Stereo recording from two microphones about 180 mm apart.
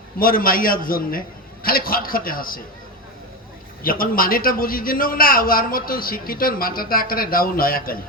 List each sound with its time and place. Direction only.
0.2 s a man's voice: 50° left (ahead or behind)
3.8 s a man's voice: 50° left (ahead or behind)